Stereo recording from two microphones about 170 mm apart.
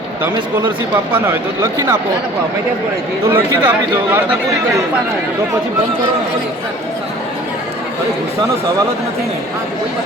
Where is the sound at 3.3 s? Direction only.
10° right (ahead or behind).